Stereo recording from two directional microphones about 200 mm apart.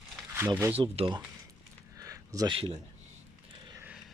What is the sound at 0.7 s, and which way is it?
Speech, 25° right (ahead or behind).